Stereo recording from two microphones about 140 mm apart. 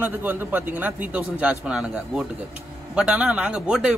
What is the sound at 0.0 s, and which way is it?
Speech, 15° right (ahead or behind).